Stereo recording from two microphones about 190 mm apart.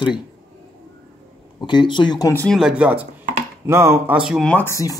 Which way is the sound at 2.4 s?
Centre (ahead or behind).